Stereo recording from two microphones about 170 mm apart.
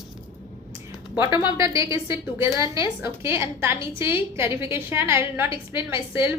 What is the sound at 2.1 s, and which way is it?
A woman's voice, 15° right (ahead or behind).